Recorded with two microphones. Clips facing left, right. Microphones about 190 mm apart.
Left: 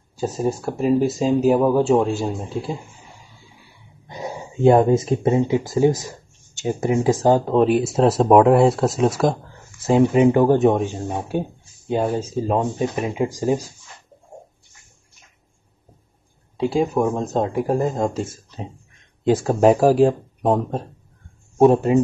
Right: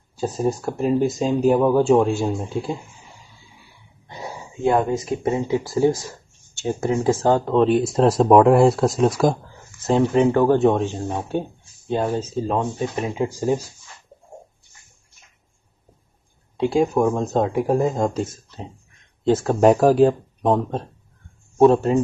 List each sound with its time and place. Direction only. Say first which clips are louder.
0.1 s speech: even; 5° left (ahead or behind)
4.1 s speech: left 4 dB; 20° left (ahead or behind); by 9.7 s centre (ahead or behind)
9.8 s speech: left 2 dB; 10° left (ahead or behind)
16.5 s speech: right 1 dB; 5° left (ahead or behind)
19.2 s speech: even; 15° left (ahead or behind)
19.5 s speech: even; centre (ahead or behind)
21.5 s speech: even; 15° left (ahead or behind)